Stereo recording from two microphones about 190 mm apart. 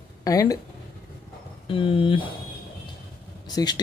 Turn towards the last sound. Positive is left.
turn(degrees=20)  # may be behind; listen again after turning